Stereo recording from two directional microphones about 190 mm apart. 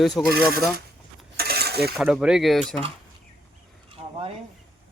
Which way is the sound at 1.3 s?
55° right (ahead or behind).